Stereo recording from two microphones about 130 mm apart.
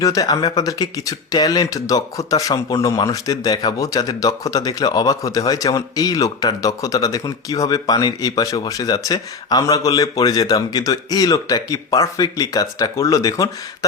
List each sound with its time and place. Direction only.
0.0 s speech: 25° left (ahead or behind)